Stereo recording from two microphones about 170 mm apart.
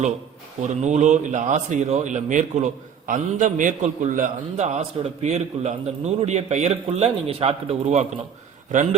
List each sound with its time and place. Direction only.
0.8 s a man's voice: 40° right (ahead or behind)